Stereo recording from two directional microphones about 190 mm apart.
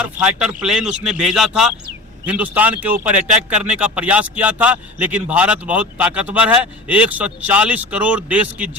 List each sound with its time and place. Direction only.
0.0 s a man's voice: 5° right (ahead or behind)